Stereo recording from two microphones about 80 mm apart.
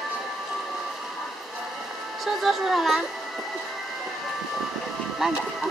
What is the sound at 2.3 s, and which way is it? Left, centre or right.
Speech, centre.